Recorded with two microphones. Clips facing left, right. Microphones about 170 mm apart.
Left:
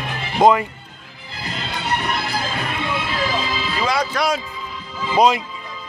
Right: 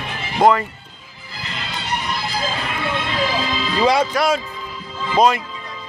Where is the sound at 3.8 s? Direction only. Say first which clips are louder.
Right 5 dB; 25° right (ahead or behind).